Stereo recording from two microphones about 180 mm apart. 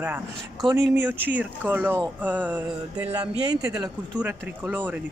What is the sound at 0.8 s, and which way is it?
Speech, 75° right (ahead or behind).